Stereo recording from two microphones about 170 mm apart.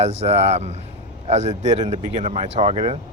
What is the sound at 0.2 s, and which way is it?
Speech, 40° right (ahead or behind).